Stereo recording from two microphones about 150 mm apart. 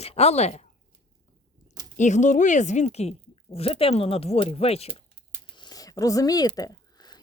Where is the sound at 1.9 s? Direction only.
55° left (ahead or behind).